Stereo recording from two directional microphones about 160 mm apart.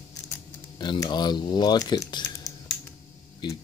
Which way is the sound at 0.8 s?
30° left (ahead or behind).